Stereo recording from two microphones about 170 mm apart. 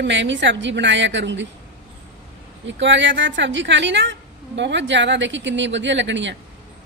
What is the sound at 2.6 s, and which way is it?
A woman's voice, 90° right.